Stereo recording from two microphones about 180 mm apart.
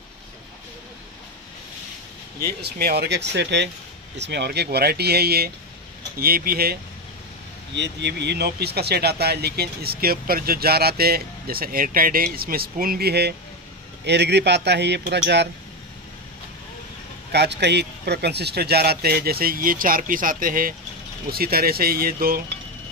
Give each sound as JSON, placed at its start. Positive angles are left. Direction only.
{"t": 2.4, "sound": "speech", "side_deg": -60}
{"t": 7.7, "sound": "speech", "side_deg": -75}
{"t": 17.3, "sound": "speech", "side_deg": -70}